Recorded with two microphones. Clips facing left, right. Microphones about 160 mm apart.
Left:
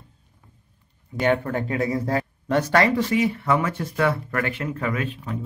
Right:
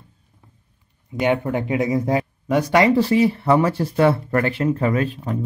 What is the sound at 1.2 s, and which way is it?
Speech, 15° right (ahead or behind).